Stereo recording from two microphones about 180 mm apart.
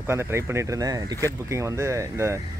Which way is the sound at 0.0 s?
15° right (ahead or behind).